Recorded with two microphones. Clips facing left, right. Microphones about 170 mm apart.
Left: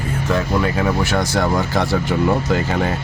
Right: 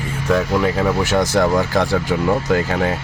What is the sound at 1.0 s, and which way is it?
Speech, 15° right (ahead or behind).